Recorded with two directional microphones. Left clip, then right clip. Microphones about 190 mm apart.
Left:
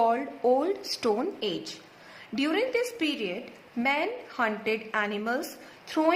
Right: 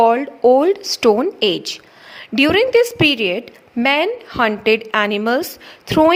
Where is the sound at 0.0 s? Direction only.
40° right (ahead or behind).